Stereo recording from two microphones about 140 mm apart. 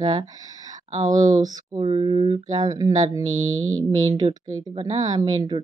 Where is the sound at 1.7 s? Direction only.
40° right (ahead or behind).